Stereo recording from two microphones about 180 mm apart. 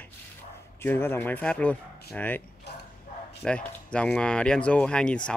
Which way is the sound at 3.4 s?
5° left (ahead or behind).